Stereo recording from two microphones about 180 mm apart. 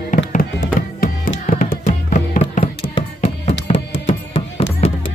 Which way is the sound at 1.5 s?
45° left (ahead or behind).